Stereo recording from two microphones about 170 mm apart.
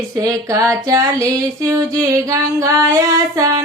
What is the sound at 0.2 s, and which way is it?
Music, 20° right (ahead or behind).